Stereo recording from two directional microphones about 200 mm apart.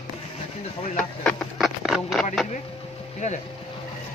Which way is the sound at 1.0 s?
5° left (ahead or behind).